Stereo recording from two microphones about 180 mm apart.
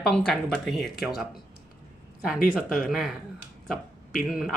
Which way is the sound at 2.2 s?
5° left (ahead or behind).